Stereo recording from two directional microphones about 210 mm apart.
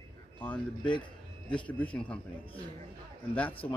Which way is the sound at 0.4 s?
5° left (ahead or behind).